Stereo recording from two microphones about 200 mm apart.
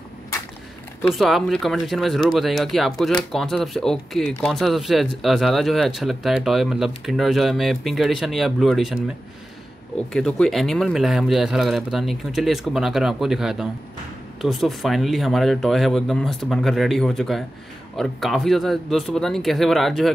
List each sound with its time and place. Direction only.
1.1 s speech: centre (ahead or behind)
10.1 s speech: 5° left (ahead or behind)